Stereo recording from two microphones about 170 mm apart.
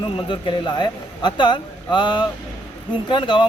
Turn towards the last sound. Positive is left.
turn(degrees=25)  # may be behind; listen again after turning